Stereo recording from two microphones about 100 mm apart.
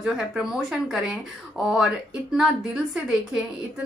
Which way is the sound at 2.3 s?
5° right (ahead or behind).